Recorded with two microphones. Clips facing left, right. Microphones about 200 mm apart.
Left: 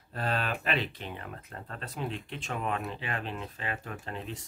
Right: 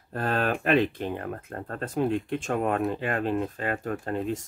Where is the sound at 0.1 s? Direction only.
50° right (ahead or behind).